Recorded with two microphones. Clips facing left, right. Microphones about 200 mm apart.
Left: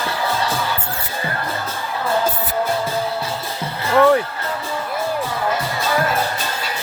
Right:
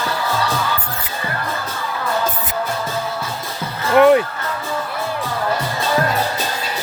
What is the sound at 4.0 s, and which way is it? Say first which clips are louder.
Music: right 3 dB; 20° right (ahead or behind).